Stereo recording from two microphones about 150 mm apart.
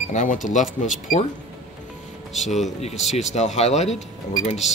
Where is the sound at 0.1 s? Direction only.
55° left (ahead or behind).